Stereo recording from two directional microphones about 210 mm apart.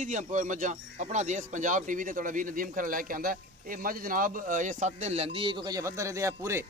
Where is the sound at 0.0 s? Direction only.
35° right (ahead or behind); by 6.6 s 15° right (ahead or behind).